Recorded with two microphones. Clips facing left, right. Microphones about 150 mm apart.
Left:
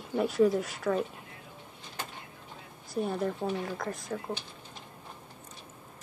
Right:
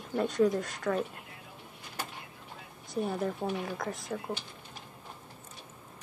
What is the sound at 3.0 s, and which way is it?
A woman's voice, centre (ahead or behind).